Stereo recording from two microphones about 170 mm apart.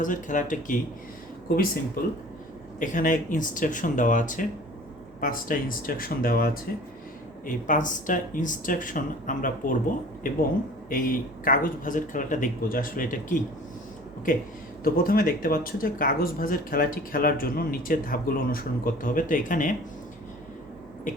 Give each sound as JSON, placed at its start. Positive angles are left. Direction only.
{"t": 0.0, "sound": "speech", "side_deg": 50}
{"t": 10.8, "sound": "speech", "side_deg": 55}